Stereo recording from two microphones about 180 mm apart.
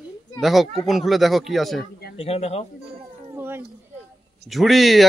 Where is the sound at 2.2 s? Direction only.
35° left (ahead or behind).